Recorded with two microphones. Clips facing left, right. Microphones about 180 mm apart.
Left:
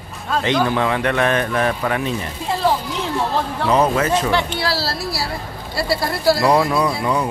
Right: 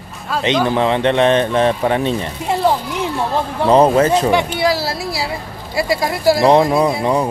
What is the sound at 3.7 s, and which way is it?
Speech, 35° right (ahead or behind).